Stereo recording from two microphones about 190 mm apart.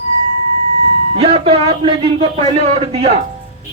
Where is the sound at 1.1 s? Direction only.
30° right (ahead or behind).